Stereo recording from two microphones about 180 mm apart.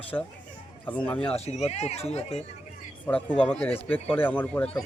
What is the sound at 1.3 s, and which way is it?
Speech, 35° left (ahead or behind).